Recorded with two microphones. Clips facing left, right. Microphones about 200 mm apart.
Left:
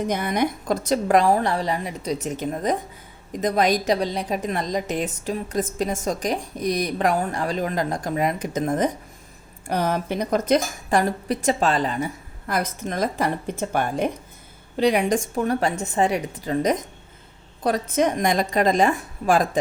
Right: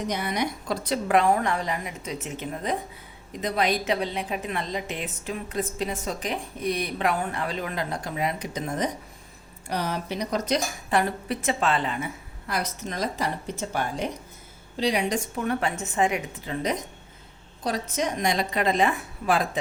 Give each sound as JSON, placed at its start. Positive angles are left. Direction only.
{"t": 0.1, "sound": "a woman's voice", "side_deg": 50}
{"t": 15.4, "sound": "a woman's voice", "side_deg": 40}
{"t": 17.6, "sound": "a woman's voice", "side_deg": 55}